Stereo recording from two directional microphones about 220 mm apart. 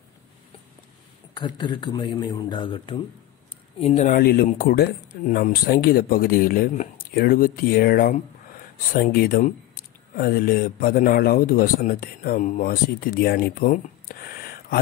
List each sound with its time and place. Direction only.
1.3 s a man's voice: 20° left (ahead or behind)
3.8 s speech: 30° left (ahead or behind)